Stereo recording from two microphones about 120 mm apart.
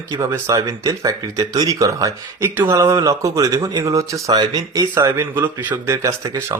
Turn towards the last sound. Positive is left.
turn(degrees=-25)  # may be behind; listen again after turning